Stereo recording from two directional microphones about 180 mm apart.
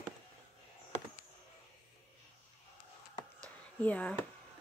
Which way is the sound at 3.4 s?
5° left (ahead or behind).